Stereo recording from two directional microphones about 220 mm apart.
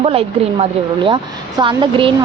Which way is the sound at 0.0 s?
25° right (ahead or behind).